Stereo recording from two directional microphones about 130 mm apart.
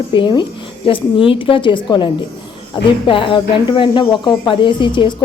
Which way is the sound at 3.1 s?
40° left (ahead or behind).